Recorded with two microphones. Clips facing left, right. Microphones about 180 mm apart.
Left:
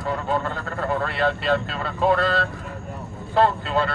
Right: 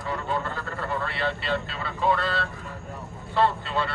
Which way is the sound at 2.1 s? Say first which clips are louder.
Left 5 dB; 40° left (ahead or behind).